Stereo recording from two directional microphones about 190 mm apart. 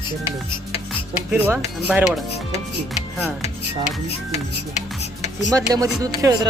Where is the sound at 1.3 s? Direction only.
10° right (ahead or behind).